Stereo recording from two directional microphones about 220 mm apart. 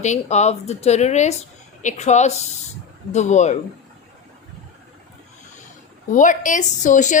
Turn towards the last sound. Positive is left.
turn(degrees=35)  # may be behind; listen again after turning